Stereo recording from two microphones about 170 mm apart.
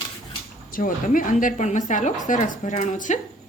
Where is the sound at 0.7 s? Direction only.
55° left (ahead or behind).